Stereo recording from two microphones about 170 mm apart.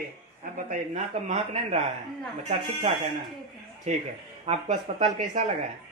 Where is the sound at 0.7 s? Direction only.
45° right (ahead or behind).